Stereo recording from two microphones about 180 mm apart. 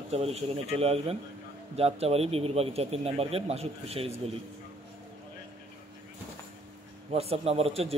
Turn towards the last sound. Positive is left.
turn(degrees=-35)  # may be behind; listen again after turning